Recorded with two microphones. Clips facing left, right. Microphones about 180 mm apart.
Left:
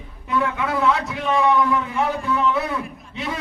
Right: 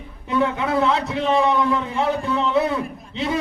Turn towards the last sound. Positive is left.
turn(degrees=-25)  # may be behind; listen again after turning